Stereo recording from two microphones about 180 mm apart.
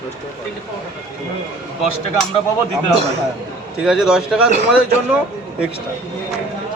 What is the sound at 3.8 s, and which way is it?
Speech, 5° right (ahead or behind).